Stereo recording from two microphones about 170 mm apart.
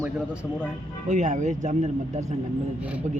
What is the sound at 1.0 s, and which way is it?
Speech, 45° right (ahead or behind).